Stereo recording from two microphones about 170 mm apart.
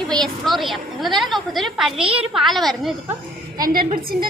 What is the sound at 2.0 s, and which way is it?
Speech, 35° right (ahead or behind).